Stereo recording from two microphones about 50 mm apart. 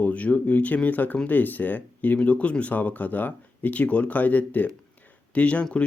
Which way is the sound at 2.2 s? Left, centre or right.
Left.